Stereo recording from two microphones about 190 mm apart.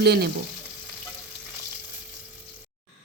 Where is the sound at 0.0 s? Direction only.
55° right (ahead or behind).